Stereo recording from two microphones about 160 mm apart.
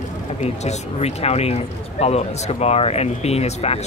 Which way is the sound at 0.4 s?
45° left (ahead or behind).